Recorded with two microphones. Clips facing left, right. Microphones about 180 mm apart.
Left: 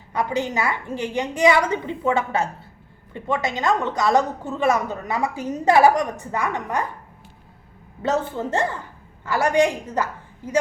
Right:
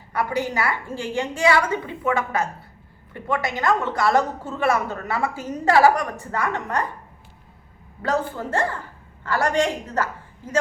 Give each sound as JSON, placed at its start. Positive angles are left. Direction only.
{"t": 0.1, "sound": "a woman's voice", "side_deg": 20}
{"t": 8.0, "sound": "a woman's voice", "side_deg": 20}